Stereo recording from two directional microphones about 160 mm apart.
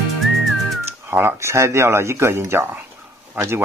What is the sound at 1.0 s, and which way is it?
Speech, 15° right (ahead or behind).